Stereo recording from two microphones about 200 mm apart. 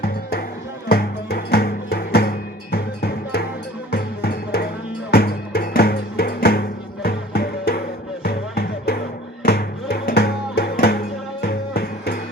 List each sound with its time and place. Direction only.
0.0 s music: 50° left (ahead or behind)
2.7 s cowbell: 50° left (ahead or behind)
3.9 s music: 55° left (ahead or behind)